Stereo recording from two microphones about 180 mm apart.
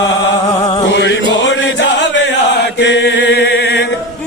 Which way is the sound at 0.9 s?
90° left.